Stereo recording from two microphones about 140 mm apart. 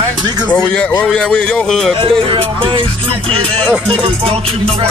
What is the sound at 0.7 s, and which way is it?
Speech, 5° left (ahead or behind).